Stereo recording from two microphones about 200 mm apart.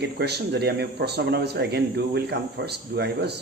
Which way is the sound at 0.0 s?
55° right (ahead or behind).